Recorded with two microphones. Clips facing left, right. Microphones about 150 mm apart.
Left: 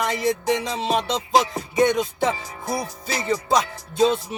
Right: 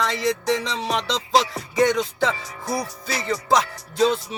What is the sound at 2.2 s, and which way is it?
Music, 20° left (ahead or behind).